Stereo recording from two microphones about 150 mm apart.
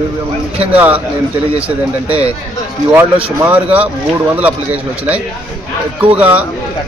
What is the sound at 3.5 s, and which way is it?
Speech, 10° right (ahead or behind).